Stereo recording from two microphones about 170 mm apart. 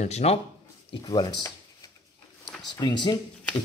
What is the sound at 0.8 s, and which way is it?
Speech, 25° left (ahead or behind).